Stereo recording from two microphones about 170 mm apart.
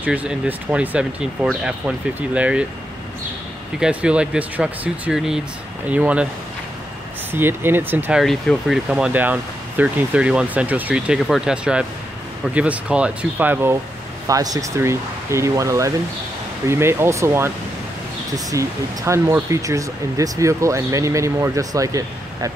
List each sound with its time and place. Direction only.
0.0 s speech: 10° right (ahead or behind)
3.8 s speech: 5° right (ahead or behind)
7.3 s speech: 15° right (ahead or behind)
8.2 s speech: centre (ahead or behind); by 22.5 s 20° right (ahead or behind)